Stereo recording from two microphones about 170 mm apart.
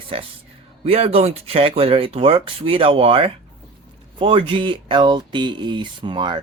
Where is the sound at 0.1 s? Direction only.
35° right (ahead or behind).